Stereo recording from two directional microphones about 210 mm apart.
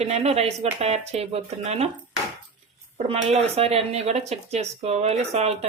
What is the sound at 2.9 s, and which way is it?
Speech, 30° right (ahead or behind).